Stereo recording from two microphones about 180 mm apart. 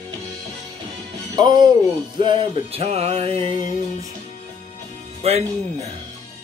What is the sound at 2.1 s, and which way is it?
Music, 25° right (ahead or behind).